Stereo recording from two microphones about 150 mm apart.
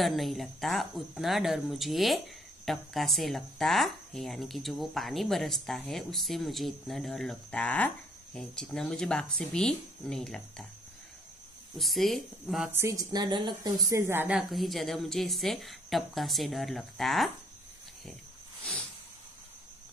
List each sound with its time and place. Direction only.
0.0 s speech: centre (ahead or behind)
11.8 s speech: centre (ahead or behind)
12.7 s a woman's voice: 20° right (ahead or behind)
14.5 s speech: centre (ahead or behind)
18.6 s a sound: 5° left (ahead or behind)